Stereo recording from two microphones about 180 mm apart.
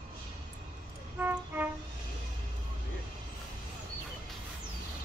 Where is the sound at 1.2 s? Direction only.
10° right (ahead or behind).